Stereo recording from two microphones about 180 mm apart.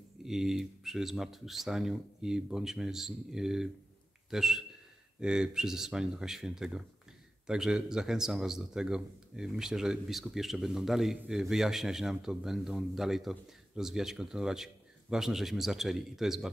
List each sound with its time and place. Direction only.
0.2 s a man's voice: centre (ahead or behind)